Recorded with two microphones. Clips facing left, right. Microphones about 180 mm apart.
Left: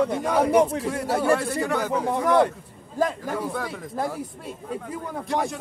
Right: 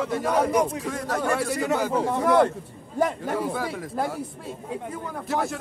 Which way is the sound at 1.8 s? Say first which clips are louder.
Right 1 dB; 10° right (ahead or behind).